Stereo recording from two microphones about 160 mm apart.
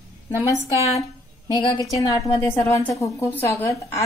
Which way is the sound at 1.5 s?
30° left (ahead or behind).